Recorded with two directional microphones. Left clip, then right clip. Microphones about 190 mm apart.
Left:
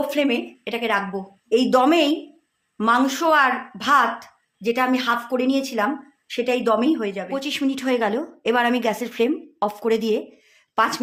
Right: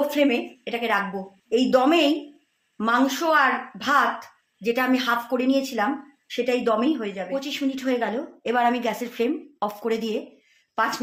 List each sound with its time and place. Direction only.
0.1 s a woman's voice: 30° left (ahead or behind)
7.3 s a woman's voice: 50° left (ahead or behind)
10.8 s a woman's voice: 45° left (ahead or behind)